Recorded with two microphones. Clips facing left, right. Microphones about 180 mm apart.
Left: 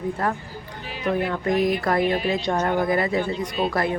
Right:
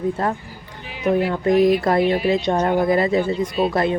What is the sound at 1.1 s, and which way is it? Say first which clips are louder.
Speech: right 5 dB; 10° right (ahead or behind).